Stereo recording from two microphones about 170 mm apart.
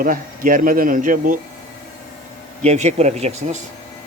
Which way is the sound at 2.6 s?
40° right (ahead or behind).